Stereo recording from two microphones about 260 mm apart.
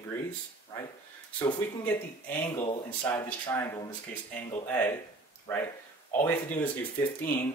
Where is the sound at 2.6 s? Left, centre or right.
Centre.